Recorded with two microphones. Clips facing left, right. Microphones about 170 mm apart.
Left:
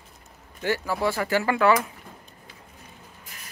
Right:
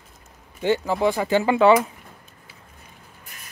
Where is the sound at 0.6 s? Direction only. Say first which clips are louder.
Right 5 dB; 20° right (ahead or behind).